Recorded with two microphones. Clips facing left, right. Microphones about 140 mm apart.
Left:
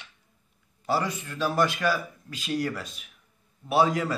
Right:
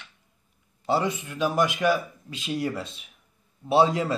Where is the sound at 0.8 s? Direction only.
20° right (ahead or behind).